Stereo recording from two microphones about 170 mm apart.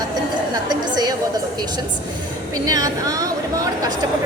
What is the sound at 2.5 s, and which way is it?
Speech, 20° right (ahead or behind).